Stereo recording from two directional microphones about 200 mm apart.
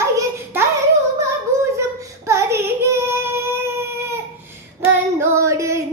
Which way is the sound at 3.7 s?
15° right (ahead or behind).